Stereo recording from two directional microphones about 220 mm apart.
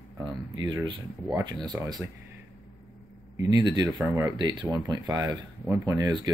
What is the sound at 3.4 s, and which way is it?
Speech, 15° right (ahead or behind).